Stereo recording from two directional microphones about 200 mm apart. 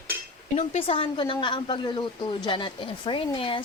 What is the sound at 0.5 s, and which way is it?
Speech, 35° left (ahead or behind).